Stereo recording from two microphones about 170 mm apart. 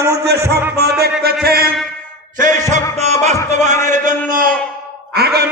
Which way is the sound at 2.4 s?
45° right (ahead or behind).